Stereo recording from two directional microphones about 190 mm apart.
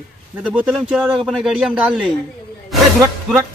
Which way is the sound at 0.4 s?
5° right (ahead or behind).